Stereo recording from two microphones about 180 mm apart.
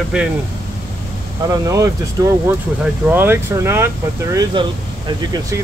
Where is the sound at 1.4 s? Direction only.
20° right (ahead or behind).